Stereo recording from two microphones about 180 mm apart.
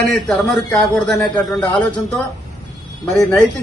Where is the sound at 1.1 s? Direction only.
20° left (ahead or behind).